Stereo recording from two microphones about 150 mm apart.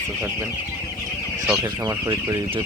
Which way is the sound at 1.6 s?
25° right (ahead or behind).